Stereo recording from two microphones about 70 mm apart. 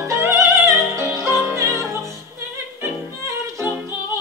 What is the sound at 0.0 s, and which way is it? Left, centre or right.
Music, right.